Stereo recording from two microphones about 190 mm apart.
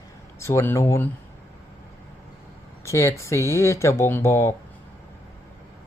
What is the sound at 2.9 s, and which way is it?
Speech, 15° left (ahead or behind).